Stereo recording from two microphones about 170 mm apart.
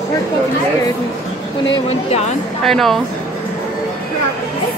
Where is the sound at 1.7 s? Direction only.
40° left (ahead or behind).